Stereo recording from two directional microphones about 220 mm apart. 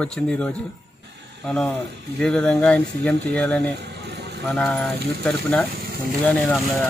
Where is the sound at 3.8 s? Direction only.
50° right (ahead or behind).